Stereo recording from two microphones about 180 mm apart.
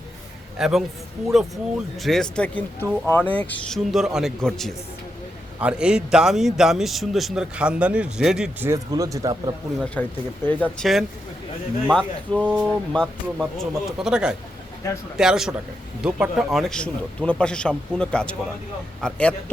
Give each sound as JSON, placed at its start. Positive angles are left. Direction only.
{"t": 0.6, "sound": "a man's voice", "side_deg": -5}
{"t": 3.9, "sound": "a man's voice", "side_deg": 0}
{"t": 8.7, "sound": "speech", "side_deg": -20}
{"t": 9.8, "sound": "a man's voice", "side_deg": 10}
{"t": 14.8, "sound": "speech", "side_deg": 15}
{"t": 15.2, "sound": "a man's voice", "side_deg": -5}